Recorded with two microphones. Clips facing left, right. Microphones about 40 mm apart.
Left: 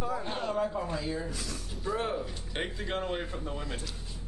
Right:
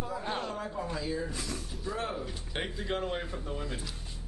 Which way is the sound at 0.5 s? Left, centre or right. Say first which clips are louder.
Left 5 dB; centre.